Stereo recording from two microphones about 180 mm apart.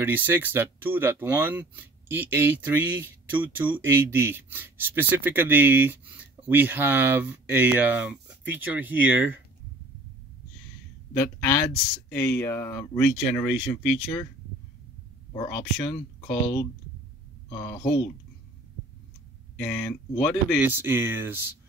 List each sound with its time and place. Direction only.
0.0 s speech: 10° right (ahead or behind)
11.1 s speech: 10° left (ahead or behind)
15.3 s speech: 15° left (ahead or behind)
19.6 s speech: 10° left (ahead or behind)
20.6 s speech: 10° right (ahead or behind)